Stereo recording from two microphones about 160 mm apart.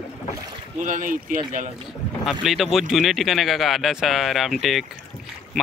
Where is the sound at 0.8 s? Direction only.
55° right (ahead or behind).